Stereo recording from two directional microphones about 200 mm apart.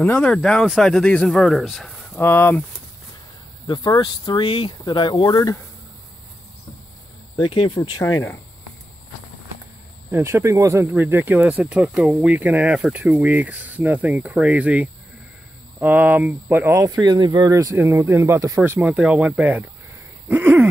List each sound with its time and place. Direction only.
0.0 s speech: 5° left (ahead or behind)
3.6 s speech: 20° left (ahead or behind)
7.3 s speech: 25° left (ahead or behind)
10.1 s speech: 15° right (ahead or behind)
18.8 s speech: centre (ahead or behind)